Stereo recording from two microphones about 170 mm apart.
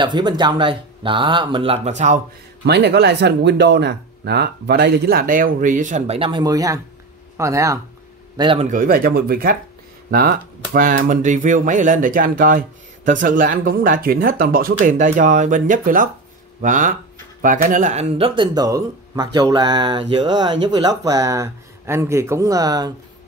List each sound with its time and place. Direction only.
0.0 s speech: 25° right (ahead or behind); by 2.1 s 45° right (ahead or behind)
2.6 s speech: 75° right (ahead or behind); by 7.8 s 20° right (ahead or behind)
8.4 s a man's voice: 30° right (ahead or behind)
8.6 s speech: 55° right (ahead or behind); by 22.9 s 20° right (ahead or behind)